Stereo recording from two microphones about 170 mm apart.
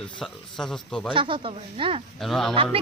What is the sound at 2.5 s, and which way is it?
Speech, 30° right (ahead or behind).